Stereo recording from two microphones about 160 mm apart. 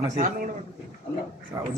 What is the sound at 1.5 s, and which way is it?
Speech, 25° right (ahead or behind).